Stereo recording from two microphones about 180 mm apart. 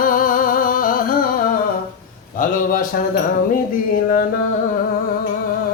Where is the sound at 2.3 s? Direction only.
50° left (ahead or behind).